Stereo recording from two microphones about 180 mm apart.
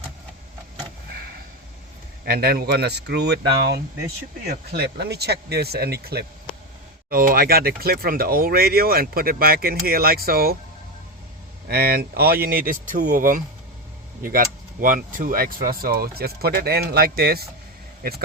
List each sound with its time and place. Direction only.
2.2 s speech: 60° right (ahead or behind)
4.4 s speech: 60° right (ahead or behind)
11.7 s speech: 60° right (ahead or behind)